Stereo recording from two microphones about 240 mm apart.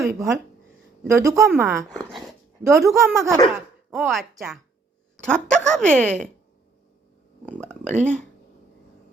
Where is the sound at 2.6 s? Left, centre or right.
Centre.